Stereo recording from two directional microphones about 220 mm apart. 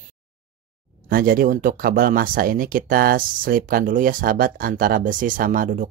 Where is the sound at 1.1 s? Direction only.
40° right (ahead or behind).